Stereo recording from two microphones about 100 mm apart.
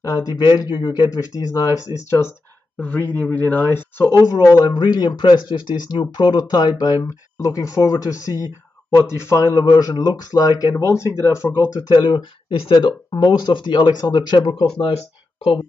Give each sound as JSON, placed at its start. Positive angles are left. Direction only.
{"t": 0.0, "sound": "speech", "side_deg": 35}
{"t": 4.2, "sound": "speech", "side_deg": 40}
{"t": 7.0, "sound": "speech", "side_deg": 30}
{"t": 11.5, "sound": "speech", "side_deg": 45}